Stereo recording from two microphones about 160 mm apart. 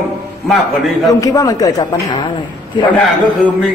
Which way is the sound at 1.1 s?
20° left (ahead or behind).